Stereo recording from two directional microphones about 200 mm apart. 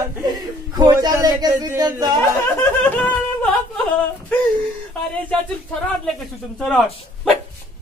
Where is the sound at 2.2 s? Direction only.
10° left (ahead or behind).